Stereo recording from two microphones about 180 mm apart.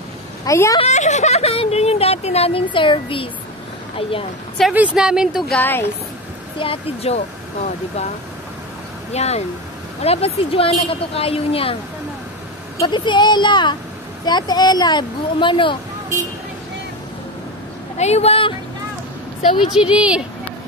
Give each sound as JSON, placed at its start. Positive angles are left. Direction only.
{"t": 0.5, "sound": "speech", "side_deg": 15}
{"t": 0.7, "sound": "speech", "side_deg": 40}
{"t": 4.6, "sound": "speech", "side_deg": 0}
{"t": 5.6, "sound": "speech", "side_deg": 10}
{"t": 6.6, "sound": "speech", "side_deg": 30}
{"t": 9.1, "sound": "speech", "side_deg": 35}
{"t": 12.7, "sound": "speech", "side_deg": 25}
{"t": 17.9, "sound": "speech", "side_deg": 35}
{"t": 19.7, "sound": "speech", "side_deg": -5}